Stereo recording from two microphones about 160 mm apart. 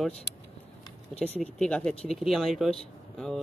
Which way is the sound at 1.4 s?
5° left (ahead or behind).